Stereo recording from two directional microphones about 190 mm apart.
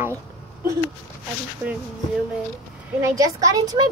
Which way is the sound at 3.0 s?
15° right (ahead or behind).